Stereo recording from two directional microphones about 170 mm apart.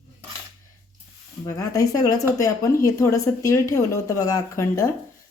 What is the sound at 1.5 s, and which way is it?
A woman's voice, 20° left (ahead or behind).